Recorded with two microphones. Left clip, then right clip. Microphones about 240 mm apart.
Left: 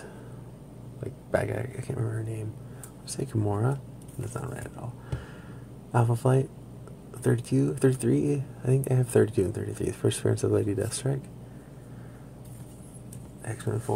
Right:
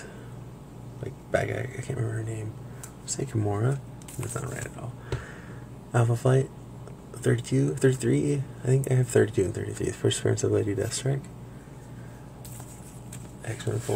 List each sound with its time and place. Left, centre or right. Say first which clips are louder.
1.3 s speech: right 1 dB; centre
5.9 s speech: right 1 dB; centre
13.5 s speech: right 1 dB; centre